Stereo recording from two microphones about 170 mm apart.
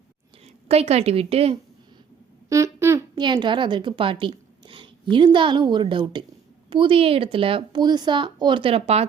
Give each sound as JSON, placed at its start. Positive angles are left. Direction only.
{"t": 0.7, "sound": "a woman's voice", "side_deg": -35}
{"t": 2.5, "sound": "a sound", "side_deg": -15}
{"t": 3.2, "sound": "a woman's voice", "side_deg": -25}